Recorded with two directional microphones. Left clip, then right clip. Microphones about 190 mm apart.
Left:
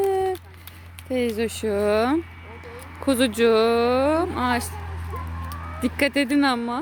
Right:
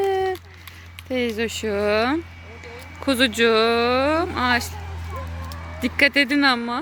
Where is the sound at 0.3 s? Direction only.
60° left (ahead or behind).